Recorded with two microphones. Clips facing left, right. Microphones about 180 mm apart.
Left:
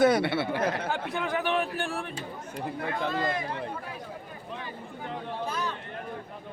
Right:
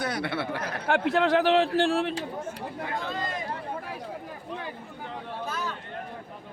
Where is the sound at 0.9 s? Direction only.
75° right (ahead or behind).